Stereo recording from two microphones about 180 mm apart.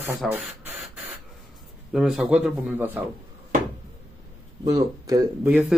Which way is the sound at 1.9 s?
Centre (ahead or behind).